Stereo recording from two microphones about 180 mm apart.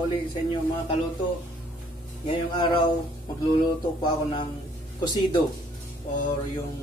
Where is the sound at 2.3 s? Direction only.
25° left (ahead or behind).